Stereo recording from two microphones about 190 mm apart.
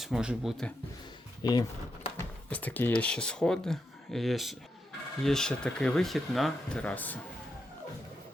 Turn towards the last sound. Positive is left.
turn(degrees=10)  # may be behind; listen again after turning